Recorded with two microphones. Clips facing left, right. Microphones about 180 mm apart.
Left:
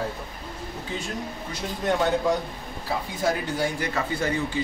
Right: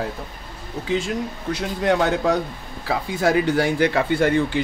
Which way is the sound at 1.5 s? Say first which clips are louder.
Right 6 dB; 80° right.